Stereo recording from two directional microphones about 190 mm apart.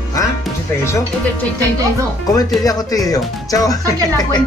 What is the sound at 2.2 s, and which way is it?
Speech, 20° left (ahead or behind).